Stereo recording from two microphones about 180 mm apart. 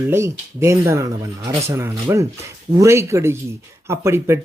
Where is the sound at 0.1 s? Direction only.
15° right (ahead or behind).